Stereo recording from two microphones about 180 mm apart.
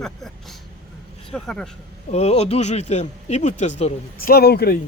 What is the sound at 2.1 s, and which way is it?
Speech, 35° left (ahead or behind).